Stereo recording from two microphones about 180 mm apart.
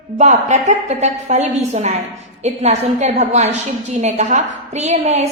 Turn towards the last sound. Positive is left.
turn(degrees=-40)  # may be behind; listen again after turning